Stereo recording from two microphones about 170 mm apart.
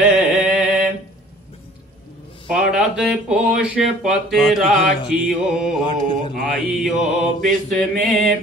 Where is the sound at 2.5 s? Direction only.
5° right (ahead or behind).